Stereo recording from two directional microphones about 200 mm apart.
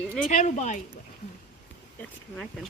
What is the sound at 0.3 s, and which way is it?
Speech, 35° left (ahead or behind).